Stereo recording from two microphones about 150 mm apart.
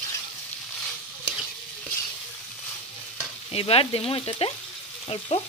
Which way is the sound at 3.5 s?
40° left (ahead or behind).